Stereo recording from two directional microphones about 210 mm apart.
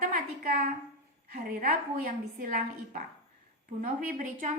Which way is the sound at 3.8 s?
40° right (ahead or behind).